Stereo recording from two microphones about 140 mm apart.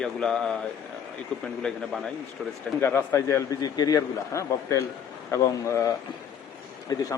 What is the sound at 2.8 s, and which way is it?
A man's voice, 20° left (ahead or behind).